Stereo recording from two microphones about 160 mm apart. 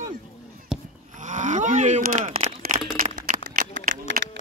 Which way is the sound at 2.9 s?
50° right (ahead or behind).